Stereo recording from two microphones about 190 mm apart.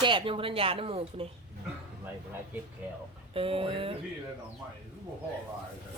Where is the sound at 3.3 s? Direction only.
30° right (ahead or behind).